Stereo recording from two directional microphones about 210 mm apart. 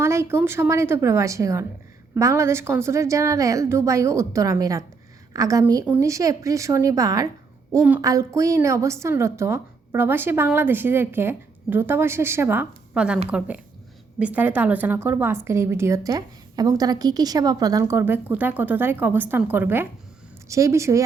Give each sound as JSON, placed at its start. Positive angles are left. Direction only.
{"t": 0.0, "sound": "a woman's voice", "side_deg": -10}
{"t": 14.2, "sound": "a woman's voice", "side_deg": -5}